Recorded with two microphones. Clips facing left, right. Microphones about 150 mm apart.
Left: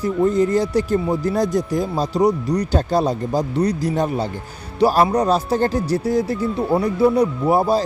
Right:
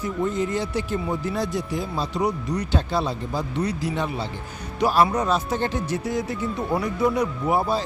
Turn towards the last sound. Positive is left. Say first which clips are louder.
# left 6 dB
turn(degrees=35)  # may be behind; listen again after turning